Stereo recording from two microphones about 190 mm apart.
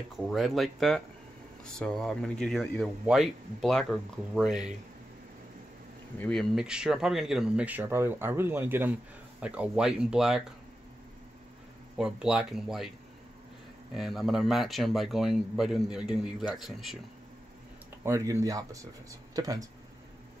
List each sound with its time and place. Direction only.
0.1 s speech: centre (ahead or behind)
6.1 s speech: 5° left (ahead or behind)
12.0 s speech: 5° right (ahead or behind)
13.9 s speech: centre (ahead or behind)
18.0 s speech: 15° right (ahead or behind)